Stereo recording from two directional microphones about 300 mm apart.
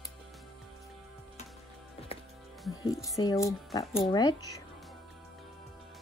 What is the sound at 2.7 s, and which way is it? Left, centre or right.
Speech, centre.